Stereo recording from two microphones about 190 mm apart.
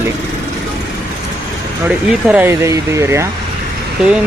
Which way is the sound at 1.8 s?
5° right (ahead or behind).